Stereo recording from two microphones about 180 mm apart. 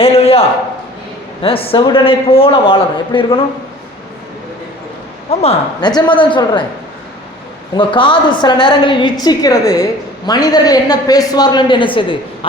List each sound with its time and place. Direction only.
0.0 s a sound: 35° left (ahead or behind)
1.4 s a man's voice: 30° left (ahead or behind)
5.3 s speech: 35° left (ahead or behind)
5.8 s a man's voice: 25° left (ahead or behind)
7.8 s a man's voice: 25° left (ahead or behind)